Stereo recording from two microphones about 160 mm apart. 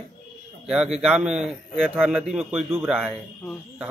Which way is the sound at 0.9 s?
5° right (ahead or behind).